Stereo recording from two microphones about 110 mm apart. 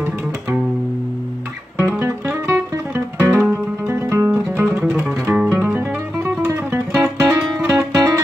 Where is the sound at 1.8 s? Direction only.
20° right (ahead or behind).